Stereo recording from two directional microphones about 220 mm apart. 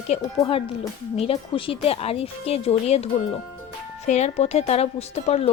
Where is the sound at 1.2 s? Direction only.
25° left (ahead or behind).